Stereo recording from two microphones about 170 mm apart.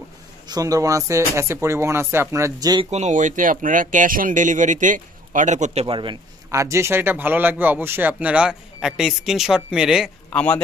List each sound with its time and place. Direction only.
0.5 s speech: 20° right (ahead or behind)
2.9 s speech: 45° right (ahead or behind)
5.9 s a man's voice: 30° right (ahead or behind)
6.5 s speech: 15° right (ahead or behind)
10.3 s speech: 10° left (ahead or behind)